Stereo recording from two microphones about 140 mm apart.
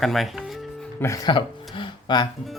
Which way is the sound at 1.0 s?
25° left (ahead or behind).